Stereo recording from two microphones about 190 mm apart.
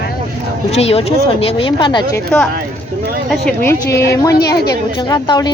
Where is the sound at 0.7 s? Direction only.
30° left (ahead or behind).